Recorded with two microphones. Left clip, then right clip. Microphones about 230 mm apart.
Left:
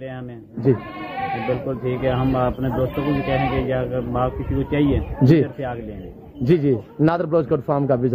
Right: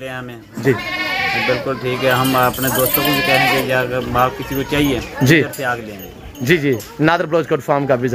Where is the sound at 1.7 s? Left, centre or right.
Centre.